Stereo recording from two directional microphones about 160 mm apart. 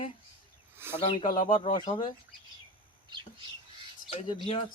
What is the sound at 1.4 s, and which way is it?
Speech, 35° left (ahead or behind).